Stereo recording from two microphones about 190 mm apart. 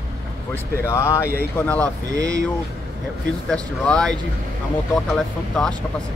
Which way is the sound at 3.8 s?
5° left (ahead or behind).